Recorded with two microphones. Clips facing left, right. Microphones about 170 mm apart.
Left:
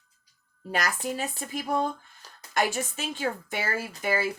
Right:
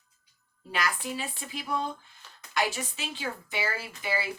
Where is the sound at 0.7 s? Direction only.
45° left (ahead or behind).